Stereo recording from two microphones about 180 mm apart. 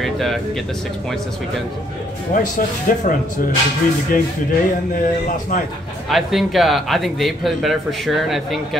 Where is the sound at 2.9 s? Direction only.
50° left (ahead or behind).